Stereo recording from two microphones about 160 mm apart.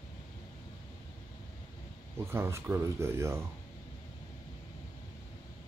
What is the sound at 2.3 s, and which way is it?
Speech, 15° right (ahead or behind).